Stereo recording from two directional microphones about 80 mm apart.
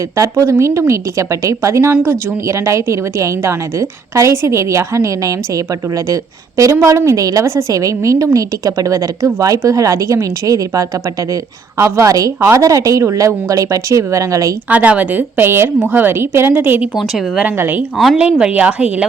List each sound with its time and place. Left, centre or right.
0.2 s a woman's voice: right
14.7 s a woman's voice: centre
17.9 s a woman's voice: centre
18.2 s a woman's voice: centre